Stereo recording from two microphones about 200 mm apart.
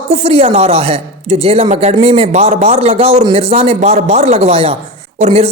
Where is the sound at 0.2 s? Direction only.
30° right (ahead or behind).